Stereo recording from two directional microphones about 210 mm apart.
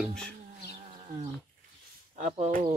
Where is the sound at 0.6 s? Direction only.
35° right (ahead or behind).